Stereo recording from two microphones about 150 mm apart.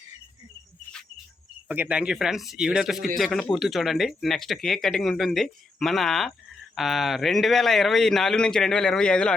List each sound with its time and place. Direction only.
1.6 s speech: 10° right (ahead or behind)